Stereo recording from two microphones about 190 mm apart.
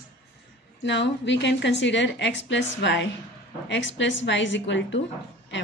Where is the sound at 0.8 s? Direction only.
70° left (ahead or behind).